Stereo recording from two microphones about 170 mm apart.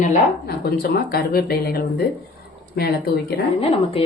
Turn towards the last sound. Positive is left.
turn(degrees=35)  # may be behind; listen again after turning